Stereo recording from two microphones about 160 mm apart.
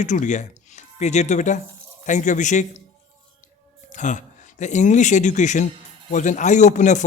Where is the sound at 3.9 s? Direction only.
50° left (ahead or behind).